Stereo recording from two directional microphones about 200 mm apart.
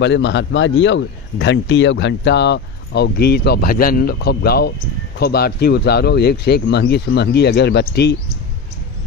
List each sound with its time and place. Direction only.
0.0 s speech: 60° left (ahead or behind)